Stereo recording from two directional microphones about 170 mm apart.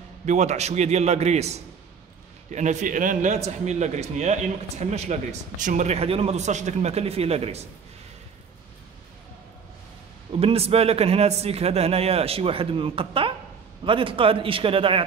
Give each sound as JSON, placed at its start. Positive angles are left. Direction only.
{"t": 0.2, "sound": "a man's voice", "side_deg": -45}
{"t": 10.4, "sound": "a man's voice", "side_deg": -35}